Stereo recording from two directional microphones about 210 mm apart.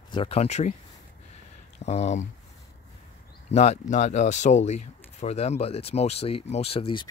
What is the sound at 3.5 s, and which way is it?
Speech, 30° left (ahead or behind).